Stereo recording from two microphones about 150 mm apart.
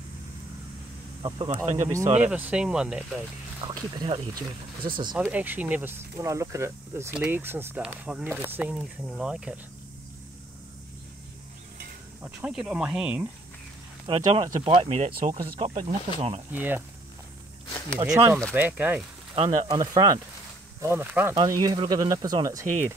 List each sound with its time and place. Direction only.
1.2 s speech: 30° right (ahead or behind)
2.1 s speech: 10° right (ahead or behind)
3.6 s speech: 30° right (ahead or behind)
5.1 s speech: 10° right (ahead or behind)
12.2 s speech: 10° right (ahead or behind)
14.0 s speech: 35° right (ahead or behind)
15.0 s speech: 50° right (ahead or behind)
15.6 s speech: 40° right (ahead or behind)
16.5 s speech: 15° right (ahead or behind)
17.9 s speech: 20° right (ahead or behind)
19.3 s speech: 40° right (ahead or behind)
19.8 s speech: 25° right (ahead or behind)
20.8 s speech: 15° right (ahead or behind)
21.5 s speech: 25° right (ahead or behind)